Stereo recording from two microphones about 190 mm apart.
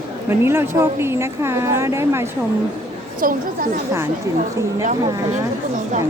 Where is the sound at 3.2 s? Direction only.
45° right (ahead or behind).